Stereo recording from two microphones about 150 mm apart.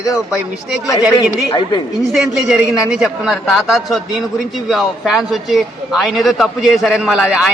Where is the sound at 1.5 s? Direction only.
30° left (ahead or behind).